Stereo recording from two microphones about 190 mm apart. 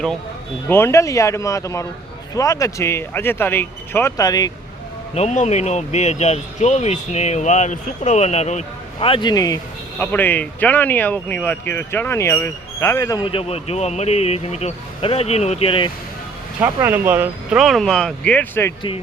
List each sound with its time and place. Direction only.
0.7 s speech: 15° left (ahead or behind)
5.1 s speech: 35° left (ahead or behind)
16.6 s speech: 10° right (ahead or behind); by 18.7 s 10° left (ahead or behind)